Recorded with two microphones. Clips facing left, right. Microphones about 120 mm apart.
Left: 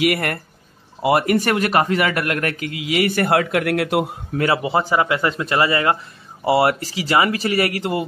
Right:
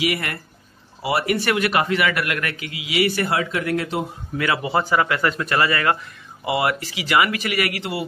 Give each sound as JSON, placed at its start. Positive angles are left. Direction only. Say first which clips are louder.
{"t": 0.0, "sound": "a man's voice", "louder": "left 5 dB", "side_deg": 50}
{"t": 4.6, "sound": "speech", "louder": "left 2 dB", "side_deg": 25}
{"t": 6.4, "sound": "speech", "louder": "left 5 dB", "side_deg": 35}